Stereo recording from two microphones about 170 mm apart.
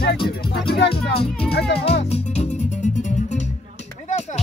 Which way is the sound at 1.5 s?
75° left (ahead or behind).